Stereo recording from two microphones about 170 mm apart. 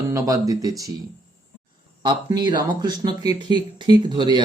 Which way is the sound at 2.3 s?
25° right (ahead or behind).